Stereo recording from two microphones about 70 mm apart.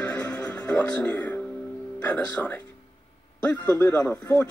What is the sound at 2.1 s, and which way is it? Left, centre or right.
Speech, left.